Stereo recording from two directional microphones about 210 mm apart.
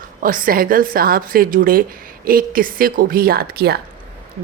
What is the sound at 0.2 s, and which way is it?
A woman's voice, 40° right (ahead or behind).